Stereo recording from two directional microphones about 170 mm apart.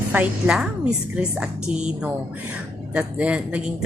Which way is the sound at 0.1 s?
10° right (ahead or behind).